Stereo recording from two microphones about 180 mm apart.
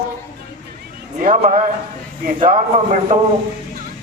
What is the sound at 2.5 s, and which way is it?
Speech, 45° right (ahead or behind).